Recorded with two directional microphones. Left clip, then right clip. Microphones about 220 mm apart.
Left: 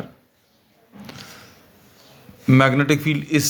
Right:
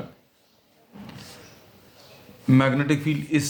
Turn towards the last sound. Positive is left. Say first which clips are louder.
# left 4 dB
turn(degrees=40)  # may be behind; listen again after turning